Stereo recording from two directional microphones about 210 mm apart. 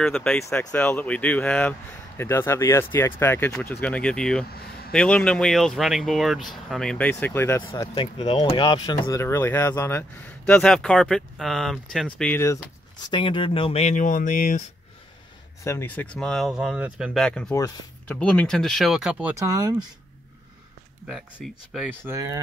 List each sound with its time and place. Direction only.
0.0 s speech: 5° left (ahead or behind)
4.5 s speech: 45° left (ahead or behind)
4.9 s speech: 5° left (ahead or behind)
13.0 s speech: 25° left (ahead or behind); by 14.6 s 40° left (ahead or behind)
15.6 s speech: 10° left (ahead or behind)
17.5 s speech: 15° left (ahead or behind); by 19.3 s 5° right (ahead or behind)
19.3 s speech: 15° right (ahead or behind)
21.4 s speech: centre (ahead or behind); by 22.4 s 15° right (ahead or behind)